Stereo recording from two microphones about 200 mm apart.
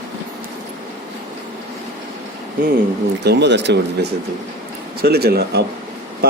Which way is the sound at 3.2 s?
60° right (ahead or behind).